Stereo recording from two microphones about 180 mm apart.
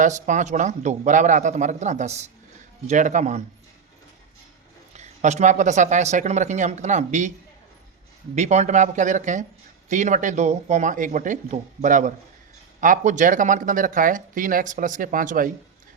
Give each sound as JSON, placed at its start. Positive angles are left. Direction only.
{"t": 0.0, "sound": "speech", "side_deg": -45}
{"t": 4.9, "sound": "speech", "side_deg": -40}
{"t": 8.4, "sound": "speech", "side_deg": -40}